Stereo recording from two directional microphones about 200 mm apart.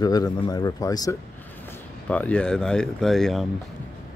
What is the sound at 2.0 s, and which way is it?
Speech, 5° left (ahead or behind).